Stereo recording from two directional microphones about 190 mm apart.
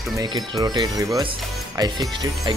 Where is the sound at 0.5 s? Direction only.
20° right (ahead or behind).